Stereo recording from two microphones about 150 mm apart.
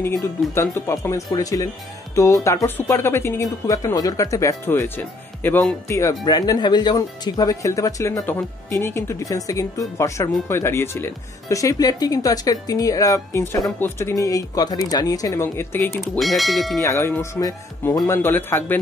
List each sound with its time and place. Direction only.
0.0 s speech: 15° left (ahead or behind)
16.0 s speech: centre (ahead or behind)
16.8 s speech: 20° left (ahead or behind)